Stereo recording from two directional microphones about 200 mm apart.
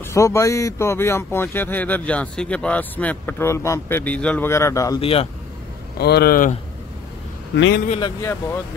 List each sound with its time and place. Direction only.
0.0 s speech: 15° left (ahead or behind)
5.0 s speech: 30° left (ahead or behind)
5.9 s speech: 55° left (ahead or behind)
7.5 s a man's voice: 65° left (ahead or behind)
8.2 s speech: 15° left (ahead or behind)